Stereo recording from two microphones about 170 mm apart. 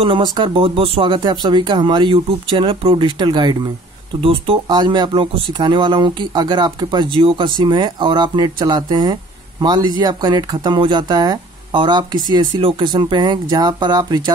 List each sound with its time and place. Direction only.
0.0 s speech: 30° right (ahead or behind)